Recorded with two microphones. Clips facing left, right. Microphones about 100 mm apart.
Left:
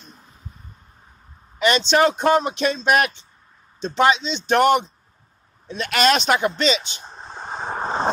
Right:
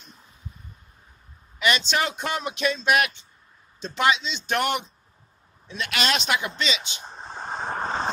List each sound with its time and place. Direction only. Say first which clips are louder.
1.6 s speech: left 7 dB; 30° left (ahead or behind)
6.8 s vehicle: even; 5° right (ahead or behind); by 8.0 s 10° left (ahead or behind)